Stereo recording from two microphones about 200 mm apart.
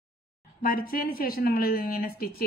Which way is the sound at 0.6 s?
45° left (ahead or behind).